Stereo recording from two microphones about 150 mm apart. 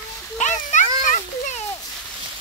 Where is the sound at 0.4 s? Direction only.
55° left (ahead or behind).